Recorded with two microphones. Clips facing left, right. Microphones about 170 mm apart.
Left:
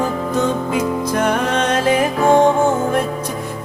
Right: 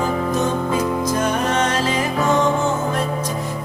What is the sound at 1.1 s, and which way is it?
Music, 60° left (ahead or behind).